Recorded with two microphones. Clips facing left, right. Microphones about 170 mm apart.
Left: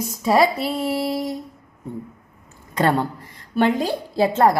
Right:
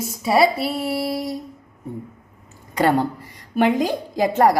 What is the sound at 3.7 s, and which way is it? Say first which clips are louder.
Speech: right 1 dB; 15° right (ahead or behind).